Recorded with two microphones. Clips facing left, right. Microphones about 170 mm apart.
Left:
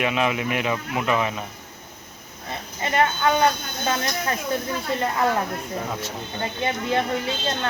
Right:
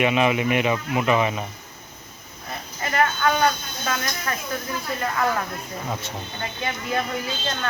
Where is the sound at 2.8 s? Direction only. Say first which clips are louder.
Left 1 dB; 25° left (ahead or behind).